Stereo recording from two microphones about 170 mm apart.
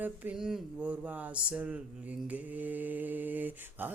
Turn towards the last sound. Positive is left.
turn(degrees=-10)  # may be behind; listen again after turning